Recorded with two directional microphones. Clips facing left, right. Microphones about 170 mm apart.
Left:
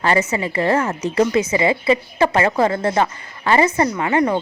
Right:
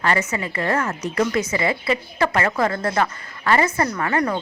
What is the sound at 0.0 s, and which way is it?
A woman's voice, 30° left (ahead or behind).